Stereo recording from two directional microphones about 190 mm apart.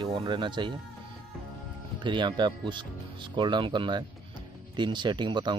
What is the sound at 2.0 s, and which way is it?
Speech, 25° right (ahead or behind).